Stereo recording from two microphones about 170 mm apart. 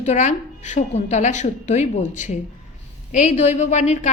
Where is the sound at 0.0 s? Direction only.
45° left (ahead or behind).